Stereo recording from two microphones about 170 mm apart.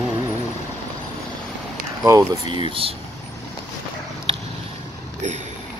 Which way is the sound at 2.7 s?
35° right (ahead or behind).